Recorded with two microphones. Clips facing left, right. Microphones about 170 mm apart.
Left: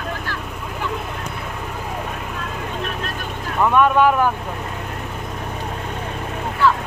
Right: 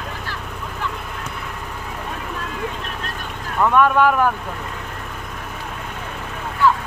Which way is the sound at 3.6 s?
15° left (ahead or behind).